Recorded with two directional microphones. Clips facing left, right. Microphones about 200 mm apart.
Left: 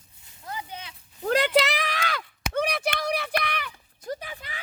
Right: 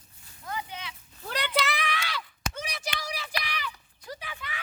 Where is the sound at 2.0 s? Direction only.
55° left (ahead or behind).